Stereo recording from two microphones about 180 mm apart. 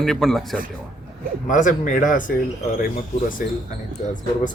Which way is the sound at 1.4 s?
45° left (ahead or behind).